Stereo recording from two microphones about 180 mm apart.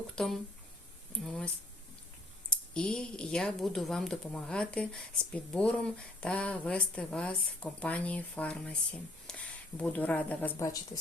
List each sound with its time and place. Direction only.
0.2 s speech: 5° left (ahead or behind)
2.5 s speech: 5° left (ahead or behind)